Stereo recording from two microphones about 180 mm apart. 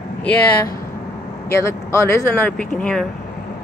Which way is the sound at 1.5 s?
15° left (ahead or behind).